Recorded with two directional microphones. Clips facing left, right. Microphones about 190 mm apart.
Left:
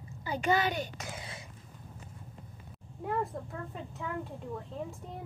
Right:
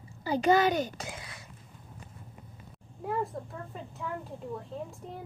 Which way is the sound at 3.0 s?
Centre (ahead or behind).